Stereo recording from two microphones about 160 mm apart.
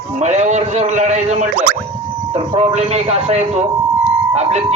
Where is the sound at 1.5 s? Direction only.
60° right (ahead or behind).